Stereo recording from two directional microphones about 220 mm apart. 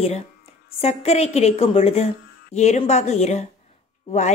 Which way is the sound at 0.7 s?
30° left (ahead or behind).